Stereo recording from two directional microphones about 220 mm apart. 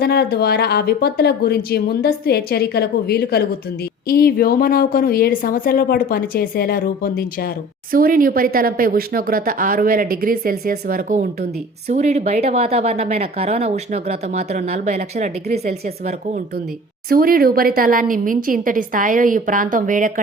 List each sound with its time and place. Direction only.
0.0 s a woman's voice: 45° left (ahead or behind)
7.9 s a woman's voice: 40° right (ahead or behind)
17.1 s a woman's voice: 40° right (ahead or behind)